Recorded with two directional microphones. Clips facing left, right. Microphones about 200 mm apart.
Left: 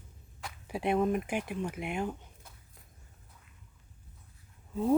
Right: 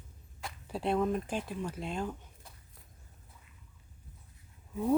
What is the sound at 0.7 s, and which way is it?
Speech, 15° left (ahead or behind).